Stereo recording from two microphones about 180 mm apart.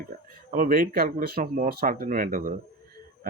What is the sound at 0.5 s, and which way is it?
Speech, 50° right (ahead or behind).